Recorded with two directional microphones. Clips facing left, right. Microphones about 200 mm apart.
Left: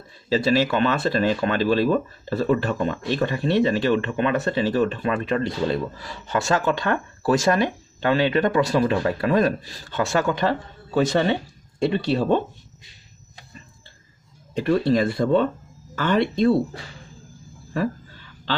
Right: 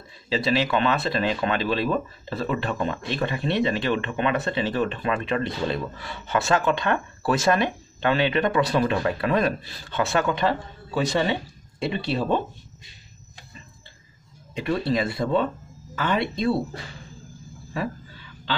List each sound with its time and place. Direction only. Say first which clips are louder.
0.3 s speech: left 3 dB; 45° left (ahead or behind)
14.5 s speech: left 5 dB; 45° left (ahead or behind)